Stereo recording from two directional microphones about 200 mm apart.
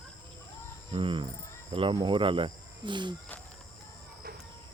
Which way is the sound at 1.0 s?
25° right (ahead or behind).